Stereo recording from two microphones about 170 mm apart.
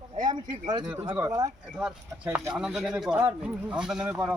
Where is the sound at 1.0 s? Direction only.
20° right (ahead or behind).